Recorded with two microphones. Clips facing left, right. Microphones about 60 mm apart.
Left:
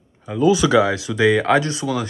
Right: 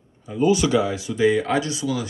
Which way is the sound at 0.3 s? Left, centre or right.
Left.